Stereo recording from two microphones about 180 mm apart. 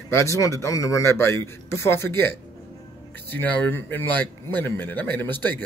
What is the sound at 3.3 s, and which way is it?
Speech, 10° left (ahead or behind).